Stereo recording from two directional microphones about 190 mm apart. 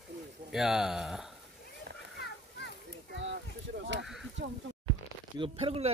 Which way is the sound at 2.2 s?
65° left (ahead or behind).